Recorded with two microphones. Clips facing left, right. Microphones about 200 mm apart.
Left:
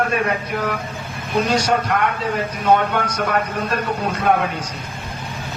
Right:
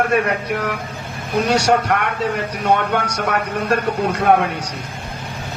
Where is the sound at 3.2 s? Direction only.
70° right (ahead or behind).